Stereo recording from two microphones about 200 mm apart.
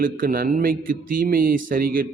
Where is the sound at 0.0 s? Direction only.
45° right (ahead or behind).